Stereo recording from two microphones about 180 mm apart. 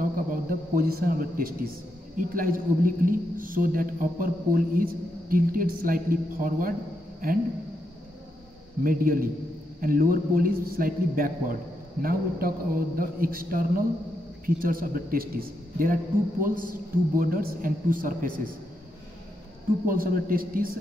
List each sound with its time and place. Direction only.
0.0 s a sound: 55° right (ahead or behind)
2.1 s a man's voice: 50° right (ahead or behind)
8.8 s a man's voice: 50° right (ahead or behind)
19.9 s a man's voice: 50° right (ahead or behind)